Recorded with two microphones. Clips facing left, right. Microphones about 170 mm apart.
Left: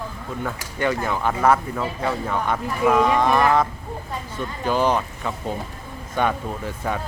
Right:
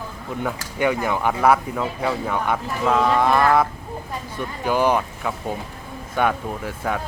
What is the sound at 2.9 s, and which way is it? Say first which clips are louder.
Moo: even; 10° left (ahead or behind).